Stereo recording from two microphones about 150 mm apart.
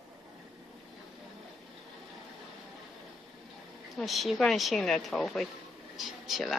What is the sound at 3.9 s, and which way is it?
Speech, centre (ahead or behind).